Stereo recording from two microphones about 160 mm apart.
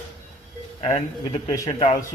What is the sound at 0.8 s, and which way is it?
Speech, 40° left (ahead or behind).